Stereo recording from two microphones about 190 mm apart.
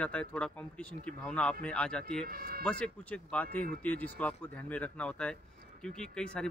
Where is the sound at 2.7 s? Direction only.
5° left (ahead or behind).